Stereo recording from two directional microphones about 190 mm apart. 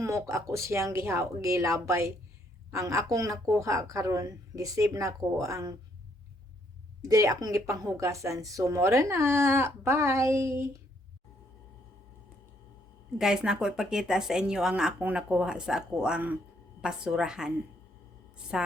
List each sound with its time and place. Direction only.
0.0 s a woman's voice: 15° right (ahead or behind)
7.0 s a woman's voice: 15° right (ahead or behind)
13.1 s a woman's voice: 5° right (ahead or behind)